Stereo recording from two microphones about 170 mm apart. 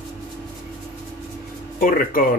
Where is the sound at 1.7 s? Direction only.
55° left (ahead or behind).